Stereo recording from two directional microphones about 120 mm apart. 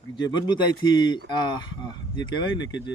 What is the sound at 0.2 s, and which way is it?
Speech, 40° left (ahead or behind).